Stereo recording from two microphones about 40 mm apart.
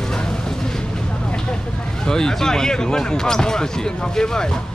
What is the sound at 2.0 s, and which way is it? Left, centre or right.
Speech, centre.